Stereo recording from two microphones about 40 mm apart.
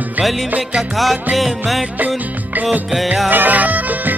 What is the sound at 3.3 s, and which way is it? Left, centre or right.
Music, right.